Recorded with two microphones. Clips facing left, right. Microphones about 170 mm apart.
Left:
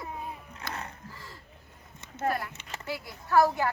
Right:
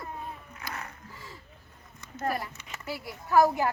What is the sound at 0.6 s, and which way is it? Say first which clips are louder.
Music: left 2 dB; 30° left (ahead or behind).